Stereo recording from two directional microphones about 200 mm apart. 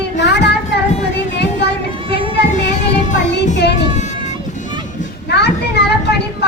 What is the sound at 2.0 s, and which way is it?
Children playing, 25° right (ahead or behind).